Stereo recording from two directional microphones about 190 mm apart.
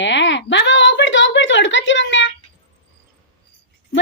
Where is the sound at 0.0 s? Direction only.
70° left (ahead or behind).